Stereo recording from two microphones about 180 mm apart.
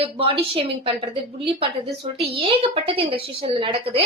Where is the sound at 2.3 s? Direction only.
30° right (ahead or behind).